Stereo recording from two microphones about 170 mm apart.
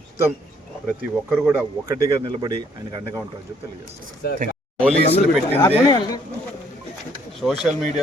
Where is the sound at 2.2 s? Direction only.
30° right (ahead or behind).